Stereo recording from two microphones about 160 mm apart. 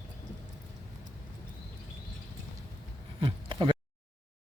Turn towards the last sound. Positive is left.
turn(degrees=-30)  # may be behind; listen again after turning